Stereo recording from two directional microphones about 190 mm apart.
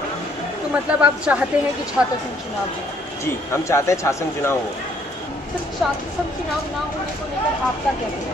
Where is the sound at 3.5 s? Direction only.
15° left (ahead or behind).